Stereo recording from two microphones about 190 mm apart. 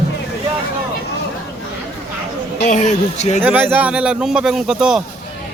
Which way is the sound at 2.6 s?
40° left (ahead or behind).